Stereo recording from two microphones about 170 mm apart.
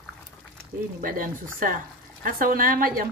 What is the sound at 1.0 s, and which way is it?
Speech, 55° right (ahead or behind).